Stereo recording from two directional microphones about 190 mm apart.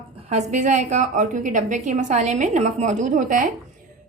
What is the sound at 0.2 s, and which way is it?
A woman's voice, 35° right (ahead or behind).